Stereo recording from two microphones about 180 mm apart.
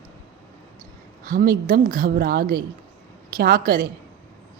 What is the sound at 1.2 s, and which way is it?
A woman's voice, 50° right (ahead or behind).